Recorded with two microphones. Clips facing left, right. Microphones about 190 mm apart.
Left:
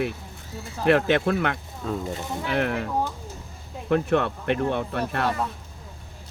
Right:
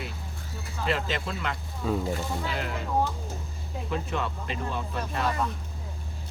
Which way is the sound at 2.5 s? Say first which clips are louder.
Left 8 dB; 65° left (ahead or behind).